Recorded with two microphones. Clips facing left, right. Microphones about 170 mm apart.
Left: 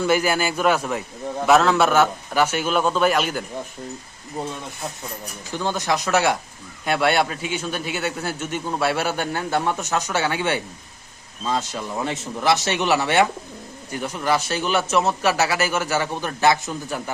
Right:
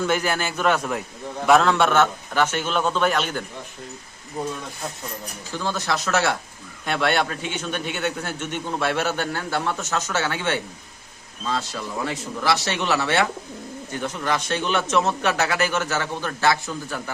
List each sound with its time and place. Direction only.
0.0 s a man's voice: 10° left (ahead or behind)
5.5 s a man's voice: 15° left (ahead or behind)